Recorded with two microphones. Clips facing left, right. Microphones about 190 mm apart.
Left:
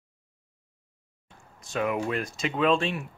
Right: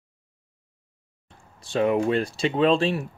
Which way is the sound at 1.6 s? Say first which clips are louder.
Right 6 dB; 30° right (ahead or behind).